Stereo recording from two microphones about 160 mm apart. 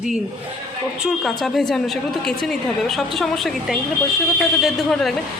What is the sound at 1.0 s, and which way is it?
A woman's voice, centre (ahead or behind).